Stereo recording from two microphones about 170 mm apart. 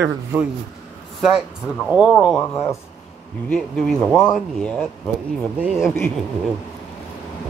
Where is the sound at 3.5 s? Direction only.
Centre (ahead or behind).